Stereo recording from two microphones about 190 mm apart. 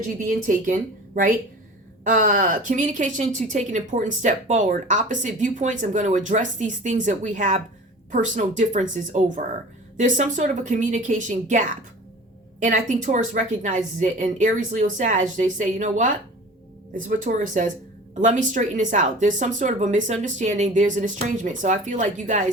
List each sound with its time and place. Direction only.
0.3 s speech: 45° right (ahead or behind)